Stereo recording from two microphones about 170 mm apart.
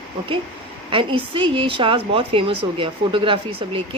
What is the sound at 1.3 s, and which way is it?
Speech, 30° right (ahead or behind).